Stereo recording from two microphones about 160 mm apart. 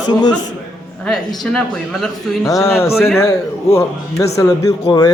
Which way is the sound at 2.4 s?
20° left (ahead or behind).